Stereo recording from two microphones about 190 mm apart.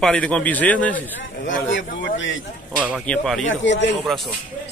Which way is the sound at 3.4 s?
75° left (ahead or behind).